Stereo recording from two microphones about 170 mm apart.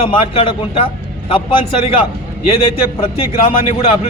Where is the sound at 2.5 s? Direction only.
30° left (ahead or behind).